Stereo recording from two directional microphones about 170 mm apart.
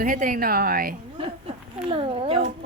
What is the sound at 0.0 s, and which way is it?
Speech, 50° right (ahead or behind).